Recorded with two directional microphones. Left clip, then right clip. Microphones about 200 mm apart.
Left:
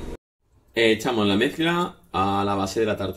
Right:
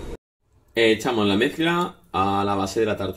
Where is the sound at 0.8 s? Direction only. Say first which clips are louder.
Right 1 dB; 20° right (ahead or behind).